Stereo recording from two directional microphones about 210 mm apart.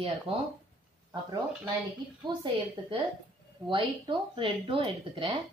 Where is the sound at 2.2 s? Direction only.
20° right (ahead or behind).